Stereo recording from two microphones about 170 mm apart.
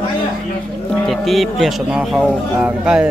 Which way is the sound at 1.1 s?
Centre (ahead or behind).